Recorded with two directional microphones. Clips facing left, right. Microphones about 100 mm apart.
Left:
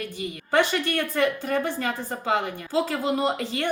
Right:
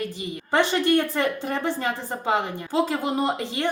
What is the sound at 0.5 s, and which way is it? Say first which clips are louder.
A woman's voice: right 3 dB; 20° right (ahead or behind).